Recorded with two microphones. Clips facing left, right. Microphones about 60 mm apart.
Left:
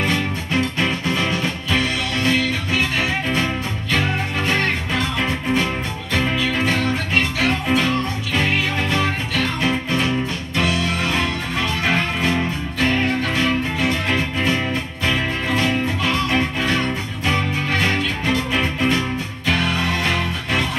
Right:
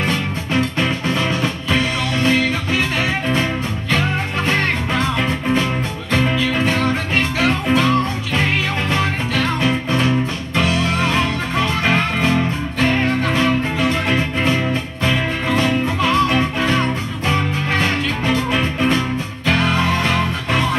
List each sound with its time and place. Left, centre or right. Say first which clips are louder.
0.7 s music: right 2 dB; right
6.1 s music: right 3 dB; right
9.8 s music: right 3 dB; right
12.8 s music: right 2 dB; right
15.0 s music: right 2 dB; right
19.4 s music: right 3 dB; right